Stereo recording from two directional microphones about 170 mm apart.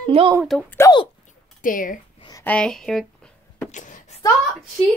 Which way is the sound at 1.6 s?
55° left (ahead or behind).